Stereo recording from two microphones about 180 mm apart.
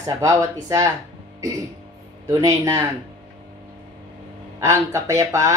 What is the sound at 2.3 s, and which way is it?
Speech, 20° right (ahead or behind).